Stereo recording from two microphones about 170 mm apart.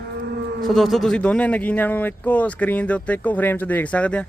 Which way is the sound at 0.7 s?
Centre (ahead or behind).